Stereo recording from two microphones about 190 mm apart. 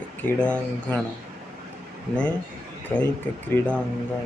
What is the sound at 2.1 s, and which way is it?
Speech, 5° left (ahead or behind).